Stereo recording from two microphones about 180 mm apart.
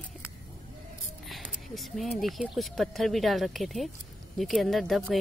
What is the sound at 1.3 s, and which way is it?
Speech, centre (ahead or behind).